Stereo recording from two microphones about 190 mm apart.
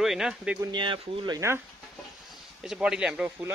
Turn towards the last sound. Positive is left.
turn(degrees=-5)  # may be behind; listen again after turning